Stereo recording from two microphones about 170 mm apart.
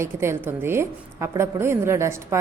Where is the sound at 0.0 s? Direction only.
15° right (ahead or behind).